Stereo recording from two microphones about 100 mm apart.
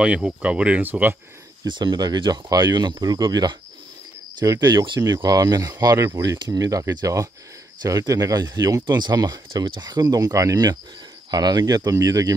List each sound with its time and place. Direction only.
0.0 s speech: 10° right (ahead or behind)
1.7 s speech: 45° right (ahead or behind)